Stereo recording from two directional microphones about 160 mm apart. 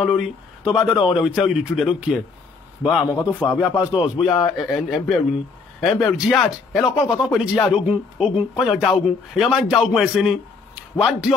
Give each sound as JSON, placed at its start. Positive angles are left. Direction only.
{"t": 0.7, "sound": "a man's voice", "side_deg": -5}
{"t": 3.2, "sound": "a man's voice", "side_deg": 25}
{"t": 4.2, "sound": "a man's voice", "side_deg": 0}